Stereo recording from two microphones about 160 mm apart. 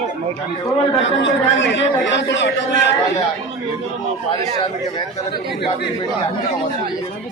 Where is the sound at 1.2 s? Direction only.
90° left.